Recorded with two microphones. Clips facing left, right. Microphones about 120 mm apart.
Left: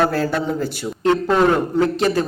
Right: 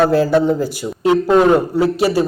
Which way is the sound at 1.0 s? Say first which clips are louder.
Right 4 dB; 15° right (ahead or behind).